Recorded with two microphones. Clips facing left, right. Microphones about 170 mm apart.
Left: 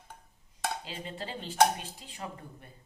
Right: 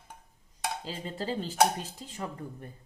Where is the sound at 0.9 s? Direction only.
40° right (ahead or behind).